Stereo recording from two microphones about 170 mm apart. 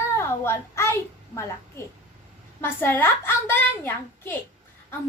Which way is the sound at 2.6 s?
15° left (ahead or behind).